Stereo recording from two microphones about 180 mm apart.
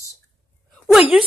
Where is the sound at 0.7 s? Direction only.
Centre (ahead or behind).